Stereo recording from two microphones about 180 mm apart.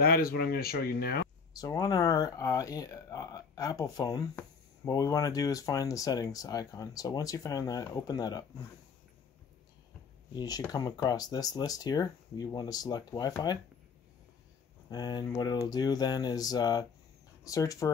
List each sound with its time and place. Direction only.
0.0 s speech: 55° left (ahead or behind)
1.6 s speech: 20° left (ahead or behind)
10.3 s speech: 20° left (ahead or behind)
14.9 s speech: 20° left (ahead or behind)